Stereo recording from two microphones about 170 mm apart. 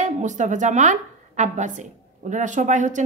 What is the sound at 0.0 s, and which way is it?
A woman's voice, 45° right (ahead or behind).